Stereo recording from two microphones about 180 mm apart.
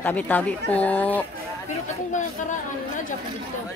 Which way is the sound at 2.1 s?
45° left (ahead or behind).